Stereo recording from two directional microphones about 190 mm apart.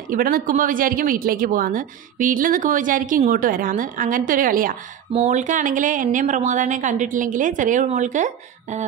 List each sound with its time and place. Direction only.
0.1 s speech: 45° right (ahead or behind)